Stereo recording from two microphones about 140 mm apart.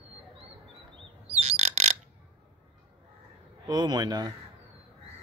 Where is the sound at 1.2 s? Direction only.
45° right (ahead or behind).